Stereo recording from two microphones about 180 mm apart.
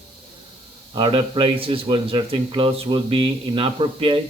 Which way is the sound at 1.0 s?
30° right (ahead or behind).